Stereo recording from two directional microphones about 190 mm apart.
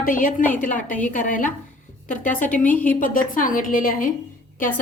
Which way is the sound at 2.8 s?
45° left (ahead or behind).